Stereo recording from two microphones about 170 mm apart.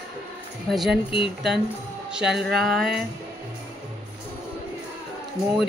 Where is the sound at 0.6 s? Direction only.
Centre (ahead or behind).